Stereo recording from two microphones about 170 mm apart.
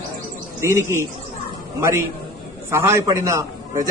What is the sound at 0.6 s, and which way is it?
Speech, 15° right (ahead or behind).